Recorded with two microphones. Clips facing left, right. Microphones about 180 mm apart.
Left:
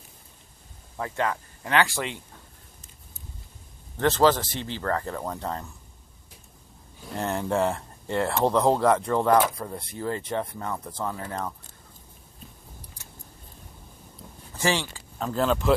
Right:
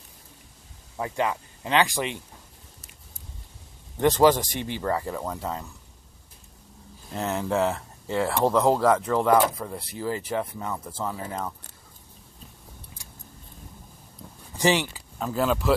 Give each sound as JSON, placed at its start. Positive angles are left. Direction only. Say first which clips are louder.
{"t": 0.9, "sound": "speech", "louder": "right 1 dB", "side_deg": -15}
{"t": 4.0, "sound": "speech", "louder": "right 2 dB", "side_deg": -15}
{"t": 7.2, "sound": "speech", "louder": "even", "side_deg": 0}
{"t": 14.6, "sound": "speech", "louder": "right 3 dB", "side_deg": -15}
{"t": 15.0, "sound": "speech", "louder": "even", "side_deg": -5}